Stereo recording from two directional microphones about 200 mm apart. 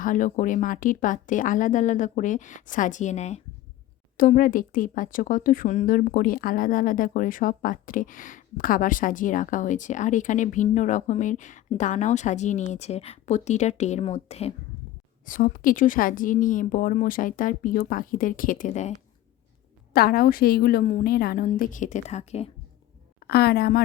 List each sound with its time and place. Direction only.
0.0 s speech: 40° left (ahead or behind)
15.3 s speech: 45° left (ahead or behind)
19.9 s speech: 50° left (ahead or behind); by 22.4 s 35° left (ahead or behind)
23.2 s speech: 50° left (ahead or behind)